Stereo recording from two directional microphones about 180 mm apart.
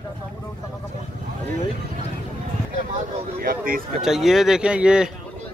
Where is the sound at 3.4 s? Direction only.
50° right (ahead or behind).